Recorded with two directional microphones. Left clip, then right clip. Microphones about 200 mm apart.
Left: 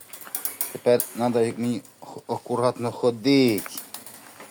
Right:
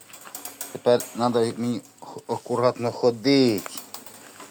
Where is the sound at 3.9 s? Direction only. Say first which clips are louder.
Right 1 dB; 5° right (ahead or behind).